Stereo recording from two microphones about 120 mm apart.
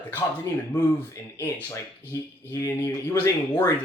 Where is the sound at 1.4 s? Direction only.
20° left (ahead or behind).